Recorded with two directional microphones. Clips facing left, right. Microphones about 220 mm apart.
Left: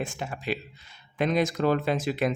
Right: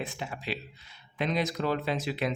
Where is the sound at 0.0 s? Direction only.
45° left (ahead or behind).